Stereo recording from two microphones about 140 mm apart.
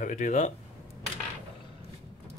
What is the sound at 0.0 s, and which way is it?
Speech, 60° left (ahead or behind).